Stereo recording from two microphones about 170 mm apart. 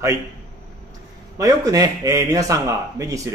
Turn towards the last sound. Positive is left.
turn(degrees=-20)  # may be behind; listen again after turning